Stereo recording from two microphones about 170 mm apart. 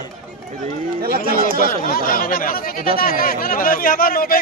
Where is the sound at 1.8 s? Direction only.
55° left (ahead or behind).